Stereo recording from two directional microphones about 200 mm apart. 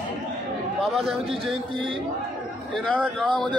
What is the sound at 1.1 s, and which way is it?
Speech, 30° right (ahead or behind).